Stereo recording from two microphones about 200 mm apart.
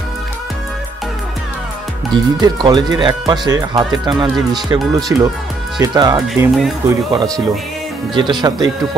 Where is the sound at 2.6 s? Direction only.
20° right (ahead or behind).